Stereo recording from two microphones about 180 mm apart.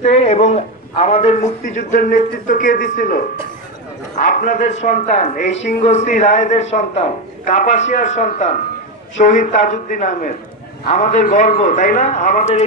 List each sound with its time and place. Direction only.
0.0 s a man's voice: 35° left (ahead or behind)
4.4 s a man's voice: 45° left (ahead or behind)